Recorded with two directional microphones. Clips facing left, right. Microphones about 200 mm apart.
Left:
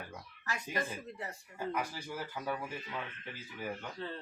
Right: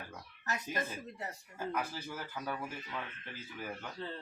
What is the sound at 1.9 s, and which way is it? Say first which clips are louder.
Speech: left 1 dB; 10° left (ahead or behind).